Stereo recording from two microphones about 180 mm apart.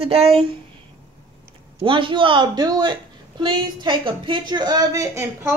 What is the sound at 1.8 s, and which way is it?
A woman's voice, 30° right (ahead or behind).